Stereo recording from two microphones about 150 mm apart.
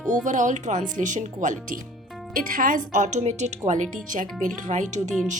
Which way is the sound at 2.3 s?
70° right (ahead or behind).